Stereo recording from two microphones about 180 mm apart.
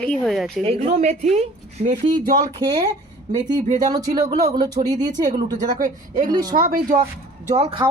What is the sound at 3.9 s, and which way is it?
Speech, 20° right (ahead or behind).